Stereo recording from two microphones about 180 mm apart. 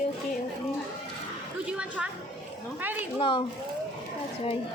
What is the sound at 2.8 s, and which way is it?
Speech, 10° right (ahead or behind).